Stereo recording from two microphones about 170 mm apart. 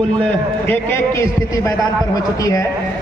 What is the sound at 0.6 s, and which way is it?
A man's voice, 15° left (ahead or behind).